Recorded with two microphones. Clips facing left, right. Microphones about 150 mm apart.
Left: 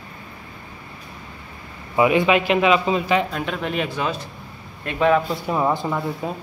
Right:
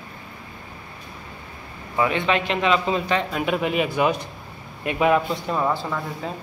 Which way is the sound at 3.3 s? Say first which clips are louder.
Right 3 dB; 5° right (ahead or behind).